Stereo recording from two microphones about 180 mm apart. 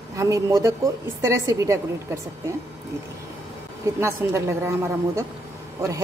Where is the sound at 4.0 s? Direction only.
15° right (ahead or behind).